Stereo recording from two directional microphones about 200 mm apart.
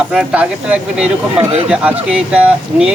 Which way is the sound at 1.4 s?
30° right (ahead or behind).